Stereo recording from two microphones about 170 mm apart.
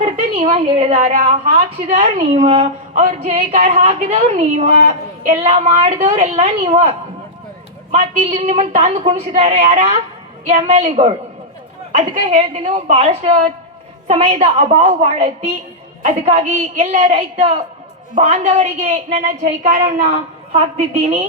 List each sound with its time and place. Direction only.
0.0 s a woman's voice: 45° right (ahead or behind)
20.1 s a woman's voice: 30° right (ahead or behind)